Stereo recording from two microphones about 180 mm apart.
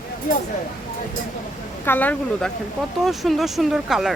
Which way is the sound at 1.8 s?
10° left (ahead or behind).